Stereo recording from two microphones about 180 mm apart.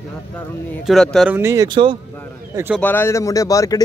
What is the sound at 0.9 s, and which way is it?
Speech, centre (ahead or behind).